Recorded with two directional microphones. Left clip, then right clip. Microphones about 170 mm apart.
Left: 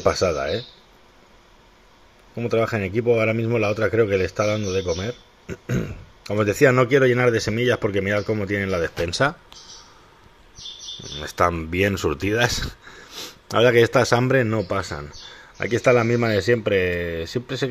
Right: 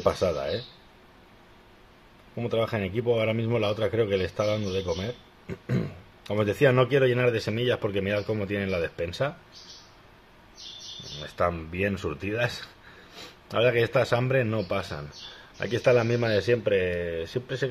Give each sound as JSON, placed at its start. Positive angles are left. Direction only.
{"t": 0.0, "sound": "speech", "side_deg": 25}
{"t": 2.4, "sound": "a man's voice", "side_deg": 25}
{"t": 6.2, "sound": "speech", "side_deg": 20}
{"t": 11.1, "sound": "a man's voice", "side_deg": 40}